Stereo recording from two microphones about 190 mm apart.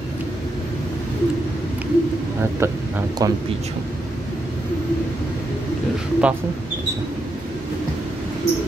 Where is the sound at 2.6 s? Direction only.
15° right (ahead or behind).